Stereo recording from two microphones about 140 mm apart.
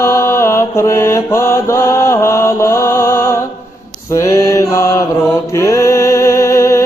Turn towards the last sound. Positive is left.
turn(degrees=20)  # may be behind; listen again after turning